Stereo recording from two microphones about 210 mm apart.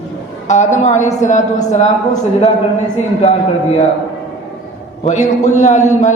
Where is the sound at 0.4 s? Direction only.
35° left (ahead or behind).